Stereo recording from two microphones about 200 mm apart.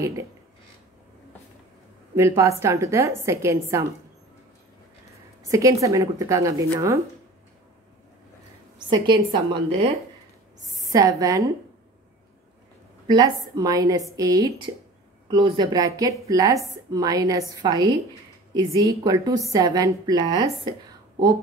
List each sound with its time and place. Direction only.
2.1 s a woman's voice: 15° right (ahead or behind)
5.5 s a woman's voice: 15° right (ahead or behind)
8.7 s a woman's voice: 20° right (ahead or behind)
13.0 s a woman's voice: 20° right (ahead or behind)